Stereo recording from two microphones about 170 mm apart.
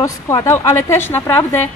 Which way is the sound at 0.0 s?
20° left (ahead or behind).